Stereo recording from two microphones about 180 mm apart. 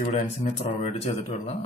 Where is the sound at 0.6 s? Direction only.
35° left (ahead or behind).